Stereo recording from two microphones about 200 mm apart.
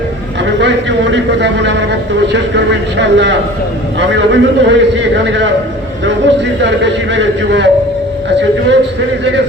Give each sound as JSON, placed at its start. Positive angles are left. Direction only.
{"t": 0.4, "sound": "a man's voice", "side_deg": -60}